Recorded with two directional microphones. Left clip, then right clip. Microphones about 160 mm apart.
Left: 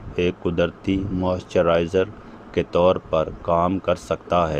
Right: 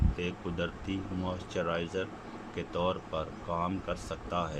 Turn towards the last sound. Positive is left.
turn(degrees=50)  # may be behind; listen again after turning